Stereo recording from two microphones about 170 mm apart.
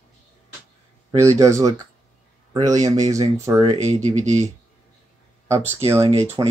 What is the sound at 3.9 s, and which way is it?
Speech, 40° right (ahead or behind).